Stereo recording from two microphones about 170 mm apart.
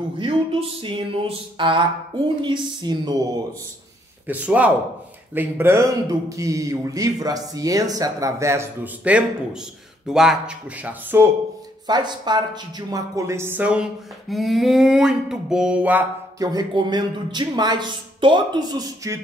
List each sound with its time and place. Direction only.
0.2 s speech: 35° right (ahead or behind)
4.3 s speech: 10° right (ahead or behind)
11.9 s speech: 25° right (ahead or behind); by 13.8 s 10° right (ahead or behind)
14.3 s a sound: centre (ahead or behind)
16.3 s speech: 25° right (ahead or behind)